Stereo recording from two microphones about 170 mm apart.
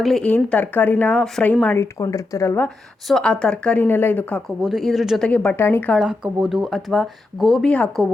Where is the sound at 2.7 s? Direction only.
Centre (ahead or behind).